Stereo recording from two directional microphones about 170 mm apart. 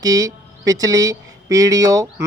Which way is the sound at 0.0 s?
20° right (ahead or behind).